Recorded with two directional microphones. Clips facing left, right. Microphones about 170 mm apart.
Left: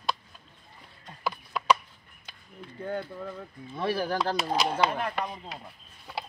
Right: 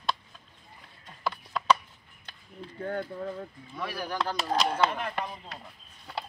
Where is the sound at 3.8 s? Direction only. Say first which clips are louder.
Left 6 dB; 25° left (ahead or behind).